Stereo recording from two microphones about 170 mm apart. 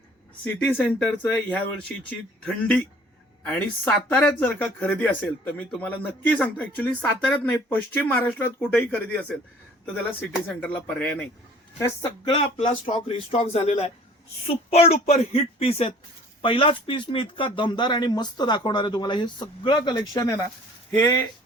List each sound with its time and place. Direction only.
0.4 s speech: 10° left (ahead or behind)
12.2 s speech: 35° left (ahead or behind)